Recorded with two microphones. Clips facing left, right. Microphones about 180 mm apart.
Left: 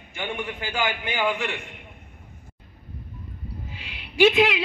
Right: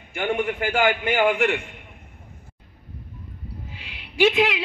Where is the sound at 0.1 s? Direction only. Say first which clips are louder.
Right 7 dB; 55° right (ahead or behind).